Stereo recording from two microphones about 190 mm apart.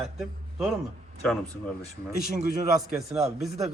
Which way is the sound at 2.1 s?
55° left (ahead or behind).